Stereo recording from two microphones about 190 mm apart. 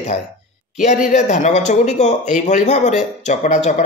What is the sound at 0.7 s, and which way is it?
Speech, 40° left (ahead or behind).